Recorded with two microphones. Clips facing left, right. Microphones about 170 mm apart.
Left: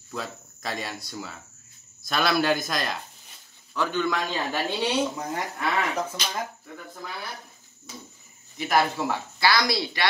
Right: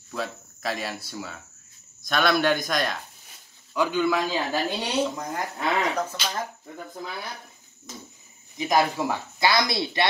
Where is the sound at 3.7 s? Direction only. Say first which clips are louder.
Right 3 dB; 10° right (ahead or behind).